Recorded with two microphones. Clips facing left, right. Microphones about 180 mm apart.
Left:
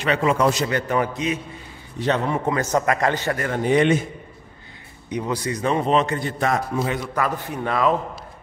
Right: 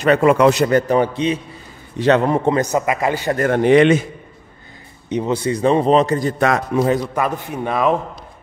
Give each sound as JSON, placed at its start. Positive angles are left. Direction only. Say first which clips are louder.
{"t": 0.0, "sound": "a man's voice", "louder": "right 7 dB", "side_deg": -50}
{"t": 0.7, "sound": "a man's voice", "louder": "right 8 dB", "side_deg": -45}
{"t": 0.9, "sound": "a man's voice", "louder": "right 6 dB", "side_deg": -30}
{"t": 2.0, "sound": "a man's voice", "louder": "right 8 dB", "side_deg": -80}
{"t": 2.3, "sound": "a man's voice", "louder": "right 6 dB", "side_deg": -25}
{"t": 2.6, "sound": "a man's voice", "louder": "right 2 dB", "side_deg": -10}
{"t": 3.5, "sound": "a man's voice", "louder": "right 6 dB", "side_deg": -85}
{"t": 5.1, "sound": "a man's voice", "louder": "right 6 dB", "side_deg": -25}
{"t": 6.3, "sound": "speech", "louder": "right 5 dB", "side_deg": -75}
{"t": 7.0, "sound": "a man's voice", "louder": "right 3 dB", "side_deg": -20}